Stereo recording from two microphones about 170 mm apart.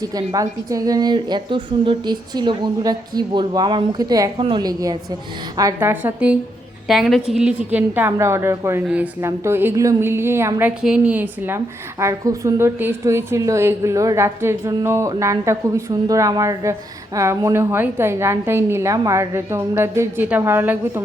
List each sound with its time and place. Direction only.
0.0 s a woman's voice: 20° right (ahead or behind)